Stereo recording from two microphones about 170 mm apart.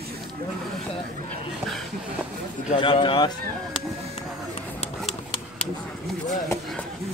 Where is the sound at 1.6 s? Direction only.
Centre (ahead or behind).